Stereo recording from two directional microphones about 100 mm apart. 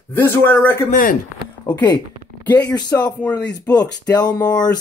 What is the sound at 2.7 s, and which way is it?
Speech, 45° left (ahead or behind).